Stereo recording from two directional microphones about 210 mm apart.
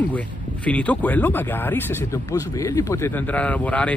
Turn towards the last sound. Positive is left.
turn(degrees=5)  # may be behind; listen again after turning